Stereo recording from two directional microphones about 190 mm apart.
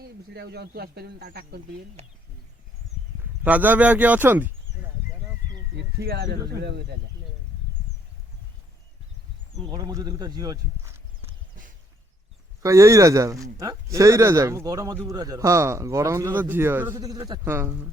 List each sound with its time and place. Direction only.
0.0 s speech: 60° right (ahead or behind)
3.4 s speech: 10° right (ahead or behind)
5.7 s speech: 60° right (ahead or behind)
9.6 s speech: 20° right (ahead or behind)
12.6 s speech: 15° right (ahead or behind)